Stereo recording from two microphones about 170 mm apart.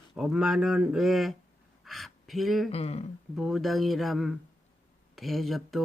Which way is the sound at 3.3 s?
Centre (ahead or behind).